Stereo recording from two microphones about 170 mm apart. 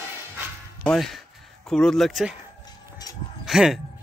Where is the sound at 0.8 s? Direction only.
Centre (ahead or behind).